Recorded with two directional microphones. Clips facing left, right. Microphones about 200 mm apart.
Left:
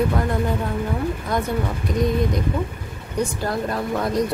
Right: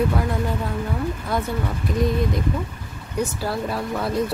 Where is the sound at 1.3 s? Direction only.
5° right (ahead or behind).